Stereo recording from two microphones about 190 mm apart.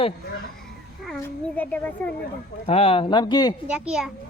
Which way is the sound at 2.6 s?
30° left (ahead or behind).